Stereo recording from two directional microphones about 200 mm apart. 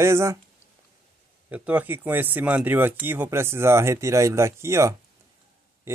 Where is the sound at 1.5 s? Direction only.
5° right (ahead or behind).